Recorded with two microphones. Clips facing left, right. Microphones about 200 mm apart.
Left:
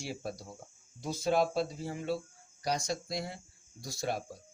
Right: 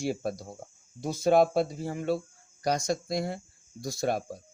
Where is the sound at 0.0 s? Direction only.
50° right (ahead or behind).